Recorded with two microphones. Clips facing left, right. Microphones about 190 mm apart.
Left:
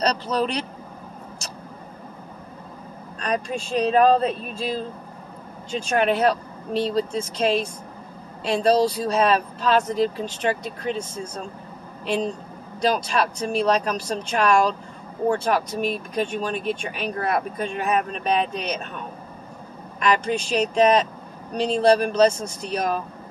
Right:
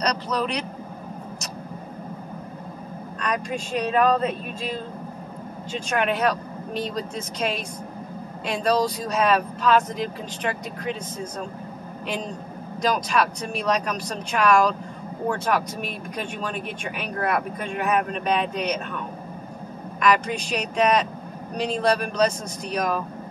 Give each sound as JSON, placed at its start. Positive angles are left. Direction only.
{"t": 0.0, "sound": "a man's voice", "side_deg": 30}
{"t": 3.2, "sound": "speech", "side_deg": 30}
{"t": 5.9, "sound": "speech", "side_deg": 30}
{"t": 12.8, "sound": "speech", "side_deg": 30}
{"t": 20.0, "sound": "speech", "side_deg": 30}